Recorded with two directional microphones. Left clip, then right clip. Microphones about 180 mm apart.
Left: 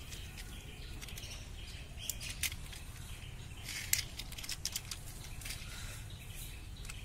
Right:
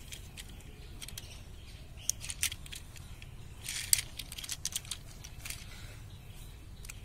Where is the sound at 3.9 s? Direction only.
25° right (ahead or behind).